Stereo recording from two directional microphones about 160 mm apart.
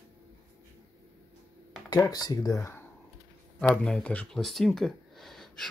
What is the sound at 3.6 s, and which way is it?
Speech, 5° left (ahead or behind).